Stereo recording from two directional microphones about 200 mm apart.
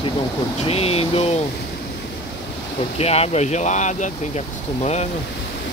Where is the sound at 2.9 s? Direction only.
30° left (ahead or behind).